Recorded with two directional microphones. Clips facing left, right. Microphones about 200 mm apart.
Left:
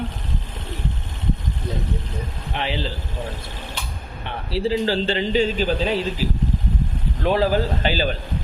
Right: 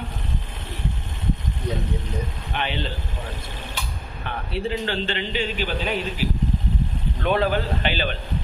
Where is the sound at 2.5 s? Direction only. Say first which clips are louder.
Left 2 dB; 30° left (ahead or behind).